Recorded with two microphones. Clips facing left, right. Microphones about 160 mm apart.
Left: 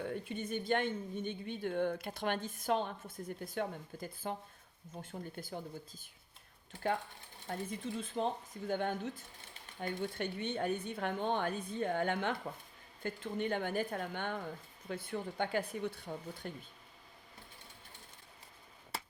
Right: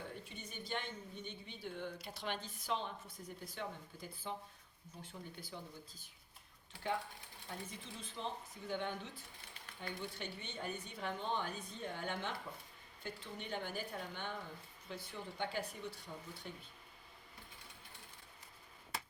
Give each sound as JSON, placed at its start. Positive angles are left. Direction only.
{"t": 0.1, "sound": "a woman's voice", "side_deg": 55}
{"t": 7.4, "sound": "a woman's voice", "side_deg": 50}